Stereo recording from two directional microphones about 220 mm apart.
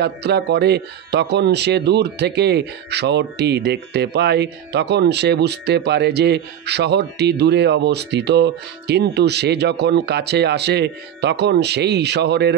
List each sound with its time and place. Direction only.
0.0 s speech: 50° right (ahead or behind)